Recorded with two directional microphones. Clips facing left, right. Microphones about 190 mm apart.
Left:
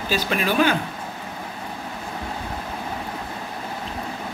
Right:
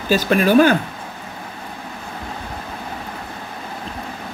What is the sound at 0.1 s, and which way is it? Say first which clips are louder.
Speech: right 9 dB; 45° right (ahead or behind).